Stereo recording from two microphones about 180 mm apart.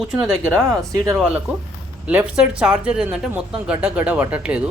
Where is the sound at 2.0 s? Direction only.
5° right (ahead or behind).